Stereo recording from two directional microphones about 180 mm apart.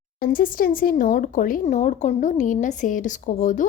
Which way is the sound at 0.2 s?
55° left (ahead or behind).